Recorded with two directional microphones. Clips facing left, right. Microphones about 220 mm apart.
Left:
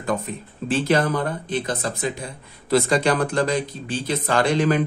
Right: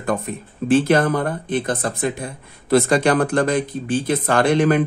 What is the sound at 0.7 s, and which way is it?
Speech, 55° right (ahead or behind).